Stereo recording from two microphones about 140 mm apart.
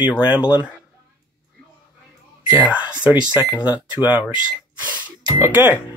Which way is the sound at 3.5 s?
10° right (ahead or behind).